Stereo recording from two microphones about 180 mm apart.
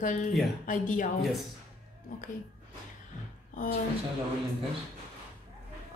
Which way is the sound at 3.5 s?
50° left (ahead or behind).